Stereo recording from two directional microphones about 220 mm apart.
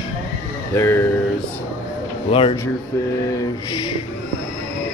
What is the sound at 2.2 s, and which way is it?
Speech, 25° left (ahead or behind).